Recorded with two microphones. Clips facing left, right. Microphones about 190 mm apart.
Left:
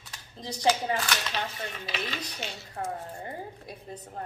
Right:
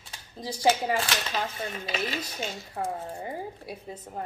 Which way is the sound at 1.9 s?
45° right (ahead or behind).